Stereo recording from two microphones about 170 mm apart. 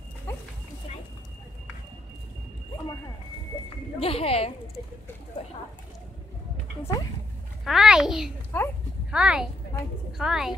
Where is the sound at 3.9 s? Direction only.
35° left (ahead or behind).